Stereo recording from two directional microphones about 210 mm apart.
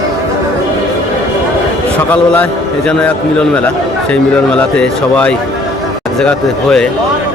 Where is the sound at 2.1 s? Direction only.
5° left (ahead or behind).